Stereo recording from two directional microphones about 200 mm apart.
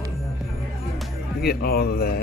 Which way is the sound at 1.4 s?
50° left (ahead or behind).